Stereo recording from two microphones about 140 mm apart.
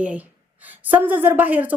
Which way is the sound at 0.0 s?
10° right (ahead or behind).